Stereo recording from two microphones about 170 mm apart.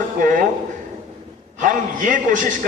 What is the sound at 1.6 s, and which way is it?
Speech, 50° right (ahead or behind).